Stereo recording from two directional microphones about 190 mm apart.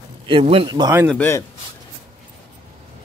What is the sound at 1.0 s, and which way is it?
Speech, 10° left (ahead or behind).